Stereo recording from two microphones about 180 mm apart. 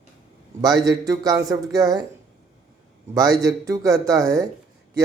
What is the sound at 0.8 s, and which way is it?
Speech, 20° right (ahead or behind).